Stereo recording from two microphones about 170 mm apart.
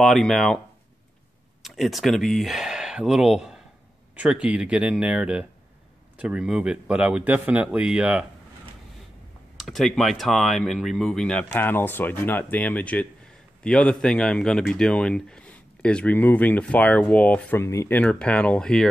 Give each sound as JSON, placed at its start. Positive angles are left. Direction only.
{"t": 0.0, "sound": "speech", "side_deg": 0}
{"t": 1.6, "sound": "speech", "side_deg": 0}
{"t": 9.6, "sound": "speech", "side_deg": 0}